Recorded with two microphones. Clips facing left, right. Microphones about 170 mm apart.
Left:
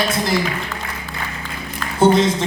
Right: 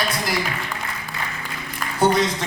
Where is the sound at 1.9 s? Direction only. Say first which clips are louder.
Left 5 dB; 25° left (ahead or behind).